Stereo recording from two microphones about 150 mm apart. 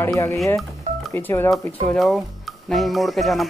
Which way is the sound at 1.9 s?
Centre (ahead or behind).